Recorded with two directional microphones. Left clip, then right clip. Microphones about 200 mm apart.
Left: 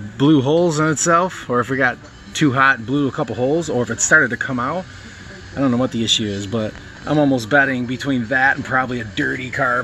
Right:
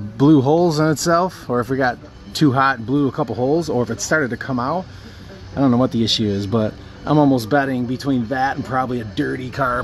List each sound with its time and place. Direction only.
0.2 s speech: 5° left (ahead or behind)
5.6 s speech: 10° right (ahead or behind)
7.4 s speech: 5° left (ahead or behind)